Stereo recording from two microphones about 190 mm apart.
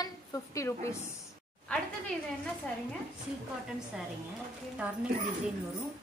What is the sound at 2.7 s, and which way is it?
Speech, 5° left (ahead or behind).